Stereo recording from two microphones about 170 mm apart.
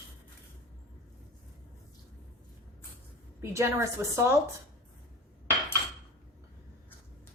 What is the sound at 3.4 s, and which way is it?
Speech, 15° right (ahead or behind).